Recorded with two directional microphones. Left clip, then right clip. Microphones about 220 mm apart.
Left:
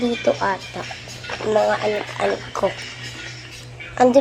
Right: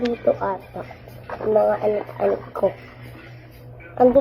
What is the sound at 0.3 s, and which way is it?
Speech, 30° left (ahead or behind).